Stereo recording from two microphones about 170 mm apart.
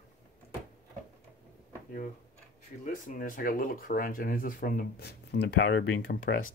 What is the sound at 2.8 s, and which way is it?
Speech, 50° left (ahead or behind).